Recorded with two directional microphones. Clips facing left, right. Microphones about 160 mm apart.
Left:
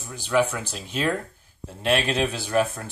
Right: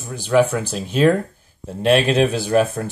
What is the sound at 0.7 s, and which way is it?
Speech, 50° right (ahead or behind).